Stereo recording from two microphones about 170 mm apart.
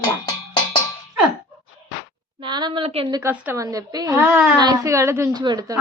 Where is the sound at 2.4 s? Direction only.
25° right (ahead or behind).